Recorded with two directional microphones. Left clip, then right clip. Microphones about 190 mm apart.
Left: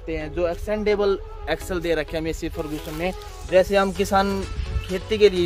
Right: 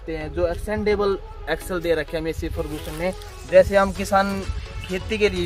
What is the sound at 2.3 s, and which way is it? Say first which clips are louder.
Speech: right 1 dB; 25° left (ahead or behind).